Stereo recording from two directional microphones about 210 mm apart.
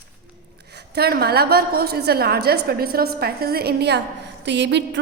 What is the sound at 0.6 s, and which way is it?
A woman's voice, 50° right (ahead or behind).